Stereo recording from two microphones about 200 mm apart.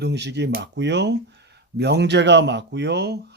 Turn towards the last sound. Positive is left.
turn(degrees=-55)  # may be behind; listen again after turning